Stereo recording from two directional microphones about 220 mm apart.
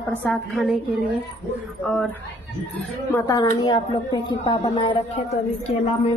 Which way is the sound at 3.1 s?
15° left (ahead or behind).